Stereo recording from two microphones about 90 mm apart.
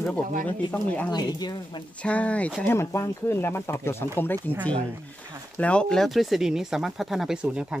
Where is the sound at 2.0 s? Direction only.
15° left (ahead or behind).